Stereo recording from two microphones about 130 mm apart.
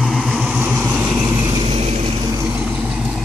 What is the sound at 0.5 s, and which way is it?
Vehicle, 15° right (ahead or behind).